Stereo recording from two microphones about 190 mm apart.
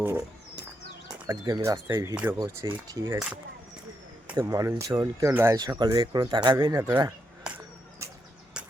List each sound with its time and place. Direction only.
1.3 s speech: 15° right (ahead or behind)
2.6 s speech: 25° right (ahead or behind)
3.1 s speech: 15° right (ahead or behind)
7.4 s a sound: 10° right (ahead or behind)